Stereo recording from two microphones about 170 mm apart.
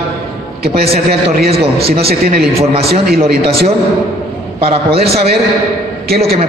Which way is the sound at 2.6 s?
35° right (ahead or behind).